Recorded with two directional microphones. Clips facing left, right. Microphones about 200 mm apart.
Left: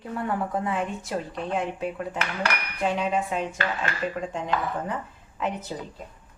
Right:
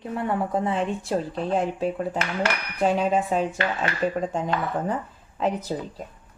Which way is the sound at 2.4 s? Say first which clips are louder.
Right 4 dB; 35° right (ahead or behind).